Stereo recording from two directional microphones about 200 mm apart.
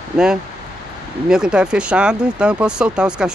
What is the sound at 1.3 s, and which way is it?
Speech, 5° right (ahead or behind).